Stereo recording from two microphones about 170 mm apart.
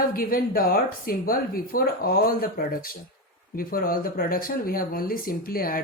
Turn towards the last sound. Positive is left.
turn(degrees=60)  # may be behind; listen again after turning